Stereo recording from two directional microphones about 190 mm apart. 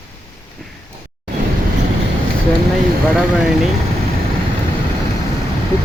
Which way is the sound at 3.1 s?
5° right (ahead or behind).